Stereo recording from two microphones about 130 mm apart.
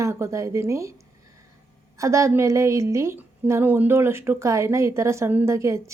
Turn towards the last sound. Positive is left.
turn(degrees=-20)  # may be behind; listen again after turning